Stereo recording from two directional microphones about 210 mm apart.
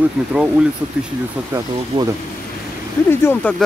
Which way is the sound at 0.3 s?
5° right (ahead or behind).